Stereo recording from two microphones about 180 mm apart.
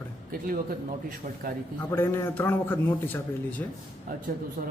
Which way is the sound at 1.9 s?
15° left (ahead or behind).